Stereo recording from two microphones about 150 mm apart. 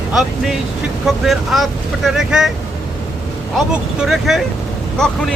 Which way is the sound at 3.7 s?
5° right (ahead or behind).